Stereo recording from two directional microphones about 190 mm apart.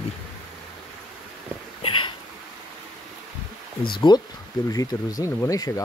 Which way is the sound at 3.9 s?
25° left (ahead or behind).